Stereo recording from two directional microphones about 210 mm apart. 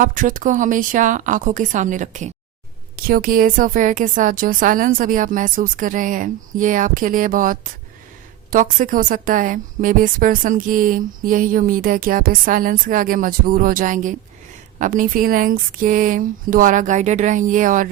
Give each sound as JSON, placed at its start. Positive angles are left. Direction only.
{"t": 0.0, "sound": "a woman's voice", "side_deg": -40}